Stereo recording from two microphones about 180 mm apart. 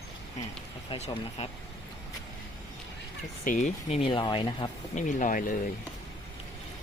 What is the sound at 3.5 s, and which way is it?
Speech, 40° left (ahead or behind).